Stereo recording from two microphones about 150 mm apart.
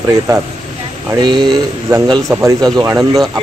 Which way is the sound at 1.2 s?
30° right (ahead or behind).